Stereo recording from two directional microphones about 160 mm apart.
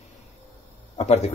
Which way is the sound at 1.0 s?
45° left (ahead or behind).